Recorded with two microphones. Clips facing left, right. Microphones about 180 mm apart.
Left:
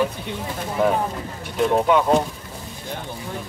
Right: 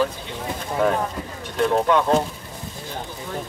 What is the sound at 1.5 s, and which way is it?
Speech, centre (ahead or behind).